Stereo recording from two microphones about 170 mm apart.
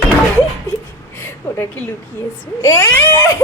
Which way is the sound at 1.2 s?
10° left (ahead or behind).